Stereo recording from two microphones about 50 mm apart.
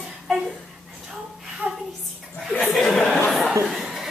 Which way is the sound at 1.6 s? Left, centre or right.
Right.